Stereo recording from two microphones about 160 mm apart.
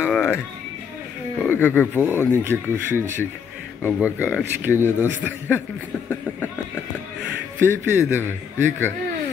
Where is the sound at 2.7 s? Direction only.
15° left (ahead or behind).